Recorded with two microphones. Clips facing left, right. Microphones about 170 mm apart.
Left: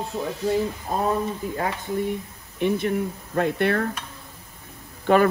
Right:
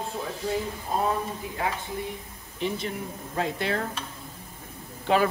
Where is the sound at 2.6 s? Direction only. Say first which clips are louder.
Left 8 dB; 55° left (ahead or behind).